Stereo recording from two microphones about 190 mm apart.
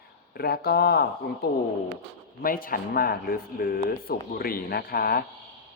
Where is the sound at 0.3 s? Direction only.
55° left (ahead or behind).